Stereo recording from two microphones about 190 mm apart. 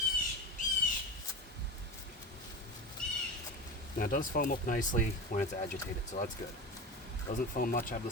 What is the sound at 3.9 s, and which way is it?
Speech, 45° left (ahead or behind).